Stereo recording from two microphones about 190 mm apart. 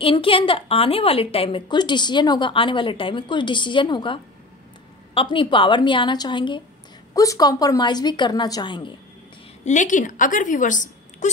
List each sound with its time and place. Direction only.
0.0 s a woman's voice: 30° left (ahead or behind)
9.7 s a woman's voice: 40° left (ahead or behind)